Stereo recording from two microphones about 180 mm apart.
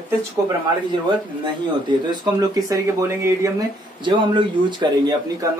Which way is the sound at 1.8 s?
25° right (ahead or behind).